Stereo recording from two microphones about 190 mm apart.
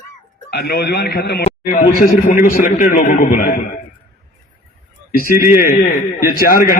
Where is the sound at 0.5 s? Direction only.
55° left (ahead or behind).